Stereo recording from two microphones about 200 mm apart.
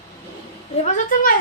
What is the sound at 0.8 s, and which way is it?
Speech, 40° left (ahead or behind).